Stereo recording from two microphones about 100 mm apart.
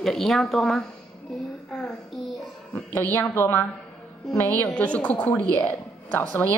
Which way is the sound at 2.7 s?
20° left (ahead or behind).